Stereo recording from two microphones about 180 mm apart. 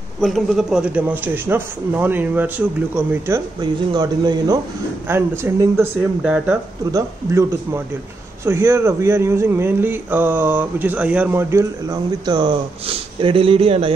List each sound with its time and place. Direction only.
0.2 s a man's voice: centre (ahead or behind)
6.9 s a man's voice: 20° right (ahead or behind)